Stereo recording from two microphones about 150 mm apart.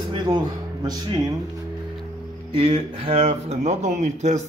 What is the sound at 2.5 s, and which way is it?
Speech, 35° right (ahead or behind).